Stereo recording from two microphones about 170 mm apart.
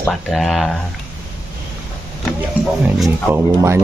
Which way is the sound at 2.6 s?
10° right (ahead or behind).